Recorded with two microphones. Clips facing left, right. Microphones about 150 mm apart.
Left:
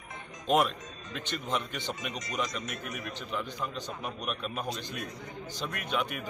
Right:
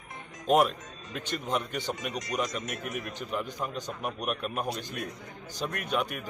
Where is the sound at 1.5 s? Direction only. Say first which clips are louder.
Right 3 dB; 40° right (ahead or behind).